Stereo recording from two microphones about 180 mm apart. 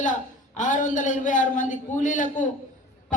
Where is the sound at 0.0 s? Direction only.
45° left (ahead or behind).